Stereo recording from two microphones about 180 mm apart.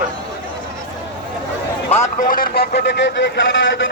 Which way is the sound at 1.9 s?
40° left (ahead or behind).